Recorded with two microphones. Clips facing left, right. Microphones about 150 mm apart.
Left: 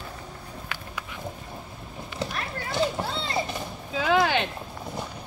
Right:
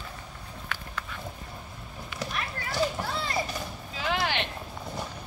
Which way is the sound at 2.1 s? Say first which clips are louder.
Left 3 dB; 25° left (ahead or behind).